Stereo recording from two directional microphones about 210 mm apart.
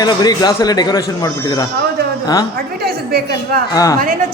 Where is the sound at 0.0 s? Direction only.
20° left (ahead or behind).